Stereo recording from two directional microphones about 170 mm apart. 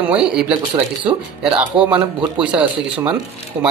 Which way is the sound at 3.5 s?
30° right (ahead or behind).